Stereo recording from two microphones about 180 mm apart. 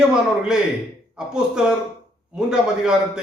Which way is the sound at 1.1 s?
5° right (ahead or behind).